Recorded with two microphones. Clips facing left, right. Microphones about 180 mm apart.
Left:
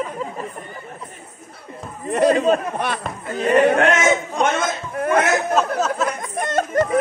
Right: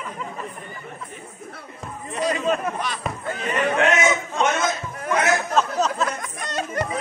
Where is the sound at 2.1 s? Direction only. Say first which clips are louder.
Left 9 dB; 60° left (ahead or behind).